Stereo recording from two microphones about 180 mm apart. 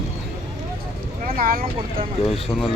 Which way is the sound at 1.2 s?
55° right (ahead or behind).